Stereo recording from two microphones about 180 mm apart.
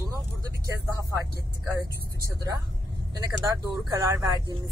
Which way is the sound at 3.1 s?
20° right (ahead or behind).